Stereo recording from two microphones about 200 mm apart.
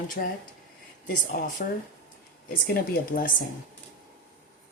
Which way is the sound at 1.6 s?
45° left (ahead or behind).